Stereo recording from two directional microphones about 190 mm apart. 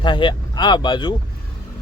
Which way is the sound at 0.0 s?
25° left (ahead or behind).